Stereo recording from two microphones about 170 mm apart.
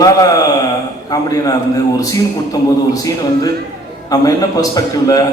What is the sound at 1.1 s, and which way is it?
A man's voice, 20° left (ahead or behind).